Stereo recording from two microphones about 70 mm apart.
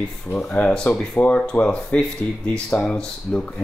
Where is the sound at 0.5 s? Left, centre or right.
Centre.